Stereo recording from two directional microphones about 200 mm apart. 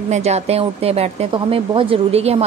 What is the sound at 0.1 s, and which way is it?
A woman's voice, 35° right (ahead or behind).